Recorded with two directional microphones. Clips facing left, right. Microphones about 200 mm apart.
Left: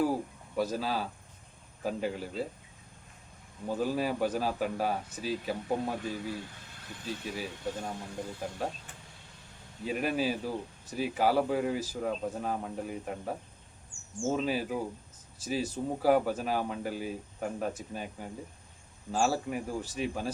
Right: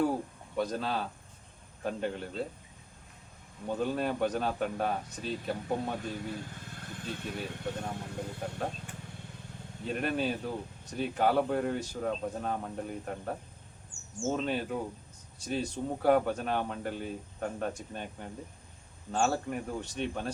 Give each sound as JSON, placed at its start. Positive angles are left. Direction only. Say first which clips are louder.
{"t": 0.0, "sound": "speech", "louder": "even", "side_deg": 5}
{"t": 3.7, "sound": "speech", "louder": "left 1 dB", "side_deg": 5}
{"t": 9.8, "sound": "speech", "louder": "left 1 dB", "side_deg": 5}